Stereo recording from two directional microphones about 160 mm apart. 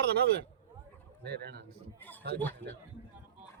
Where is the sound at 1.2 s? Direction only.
90° right.